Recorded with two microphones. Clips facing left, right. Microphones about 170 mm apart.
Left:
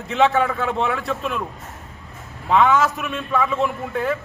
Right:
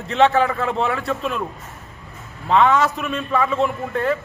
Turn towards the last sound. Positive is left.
turn(degrees=0)  # may be behind; listen again after turning